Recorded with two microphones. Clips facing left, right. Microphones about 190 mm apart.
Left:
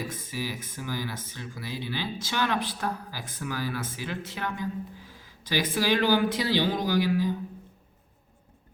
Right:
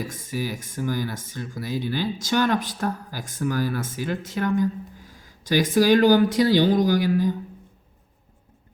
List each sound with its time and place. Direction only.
0.0 s speech: 45° right (ahead or behind)